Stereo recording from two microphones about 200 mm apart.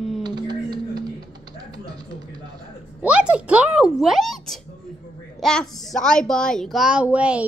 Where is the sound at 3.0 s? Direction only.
5° right (ahead or behind).